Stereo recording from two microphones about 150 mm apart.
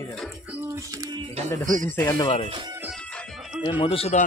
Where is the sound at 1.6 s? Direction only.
60° right (ahead or behind).